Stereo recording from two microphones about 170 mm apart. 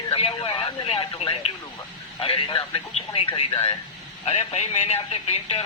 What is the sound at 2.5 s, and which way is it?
A man's voice, 30° left (ahead or behind).